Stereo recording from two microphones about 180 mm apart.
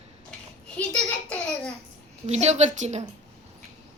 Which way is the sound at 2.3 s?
35° right (ahead or behind).